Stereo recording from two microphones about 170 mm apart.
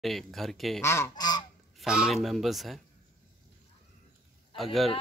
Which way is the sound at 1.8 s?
5° right (ahead or behind).